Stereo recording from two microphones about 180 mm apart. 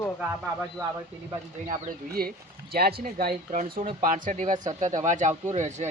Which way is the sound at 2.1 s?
55° right (ahead or behind).